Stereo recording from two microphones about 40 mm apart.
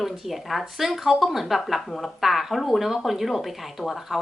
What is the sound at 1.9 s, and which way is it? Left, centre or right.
Speech, centre.